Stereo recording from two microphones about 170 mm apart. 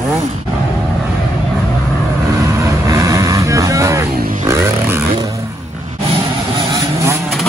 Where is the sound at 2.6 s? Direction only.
15° right (ahead or behind).